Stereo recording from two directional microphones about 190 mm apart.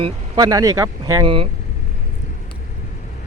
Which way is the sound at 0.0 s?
20° right (ahead or behind).